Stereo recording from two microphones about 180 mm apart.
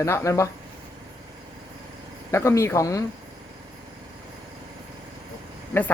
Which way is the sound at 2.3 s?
15° left (ahead or behind).